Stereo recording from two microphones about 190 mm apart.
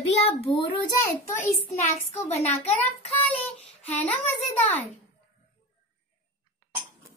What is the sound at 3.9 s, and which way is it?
Speech, 10° left (ahead or behind).